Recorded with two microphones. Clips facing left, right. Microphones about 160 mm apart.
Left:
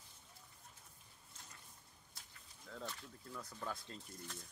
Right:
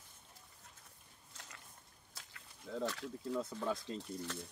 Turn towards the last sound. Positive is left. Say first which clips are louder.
# right 10 dB
turn(degrees=-90)